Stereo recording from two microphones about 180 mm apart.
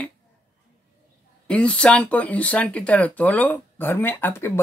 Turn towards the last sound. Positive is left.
turn(degrees=10)  # may be behind; listen again after turning